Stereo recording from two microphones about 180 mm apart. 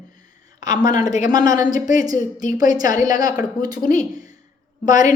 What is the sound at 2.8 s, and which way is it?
A woman's voice, 45° left (ahead or behind).